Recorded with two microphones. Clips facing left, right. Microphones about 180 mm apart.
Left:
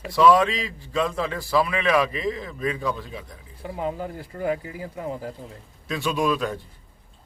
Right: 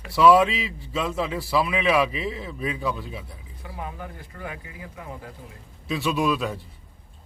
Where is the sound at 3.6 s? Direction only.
25° left (ahead or behind).